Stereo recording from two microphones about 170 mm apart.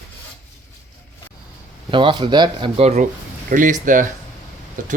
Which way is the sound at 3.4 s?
50° right (ahead or behind).